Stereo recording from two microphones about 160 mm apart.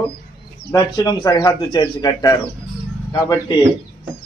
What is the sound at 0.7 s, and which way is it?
Speech, 20° left (ahead or behind).